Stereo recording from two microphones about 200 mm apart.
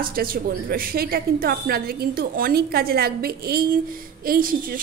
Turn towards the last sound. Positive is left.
turn(degrees=-45)  # may be behind; listen again after turning